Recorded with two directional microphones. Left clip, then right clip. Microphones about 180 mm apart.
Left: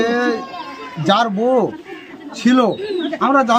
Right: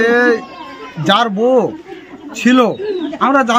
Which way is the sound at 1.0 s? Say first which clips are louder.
Right 3 dB; 5° right (ahead or behind).